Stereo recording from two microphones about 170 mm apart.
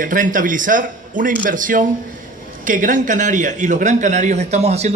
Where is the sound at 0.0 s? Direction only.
50° right (ahead or behind).